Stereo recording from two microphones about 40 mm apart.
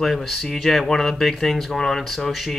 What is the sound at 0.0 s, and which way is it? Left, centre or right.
Speech, centre.